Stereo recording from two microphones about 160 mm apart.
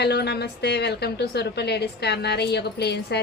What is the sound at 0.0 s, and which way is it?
A woman's voice, 90° left.